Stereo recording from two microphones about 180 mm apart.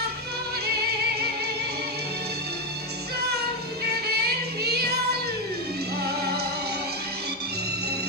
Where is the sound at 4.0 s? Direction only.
60° right (ahead or behind).